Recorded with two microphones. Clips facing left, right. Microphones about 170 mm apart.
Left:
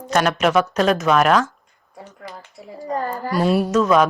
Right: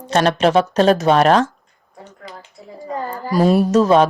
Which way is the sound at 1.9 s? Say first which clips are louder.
Even; 10° left (ahead or behind).